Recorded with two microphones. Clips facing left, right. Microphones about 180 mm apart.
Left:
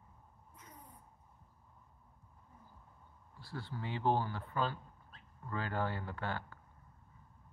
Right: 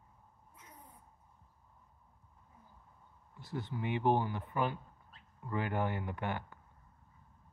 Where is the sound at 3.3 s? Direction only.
20° right (ahead or behind).